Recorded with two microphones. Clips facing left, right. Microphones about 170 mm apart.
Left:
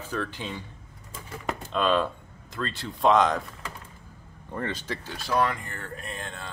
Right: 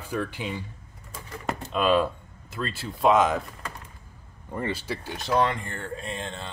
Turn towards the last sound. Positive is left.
turn(degrees=-25)  # may be behind; listen again after turning